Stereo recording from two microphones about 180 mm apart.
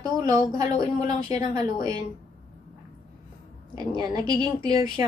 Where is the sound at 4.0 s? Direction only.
25° right (ahead or behind).